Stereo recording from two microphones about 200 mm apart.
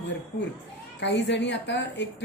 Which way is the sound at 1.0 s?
60° left (ahead or behind).